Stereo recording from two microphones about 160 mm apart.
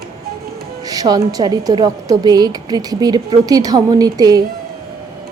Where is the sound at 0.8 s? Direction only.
25° right (ahead or behind).